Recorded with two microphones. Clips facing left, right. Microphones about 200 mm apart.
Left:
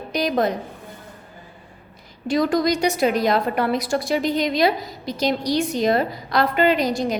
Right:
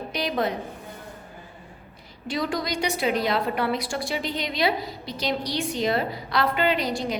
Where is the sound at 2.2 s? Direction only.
45° left (ahead or behind).